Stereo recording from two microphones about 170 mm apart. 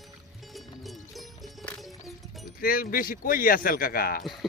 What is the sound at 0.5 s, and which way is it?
Music, centre (ahead or behind).